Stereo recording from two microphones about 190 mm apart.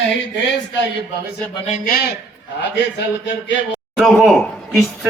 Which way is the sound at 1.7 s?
45° left (ahead or behind).